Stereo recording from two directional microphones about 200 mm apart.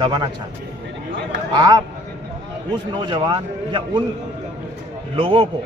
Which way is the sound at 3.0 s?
25° right (ahead or behind).